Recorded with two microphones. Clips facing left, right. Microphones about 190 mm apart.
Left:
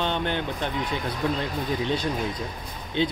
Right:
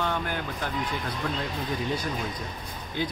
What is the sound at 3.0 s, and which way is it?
Speech, 25° left (ahead or behind).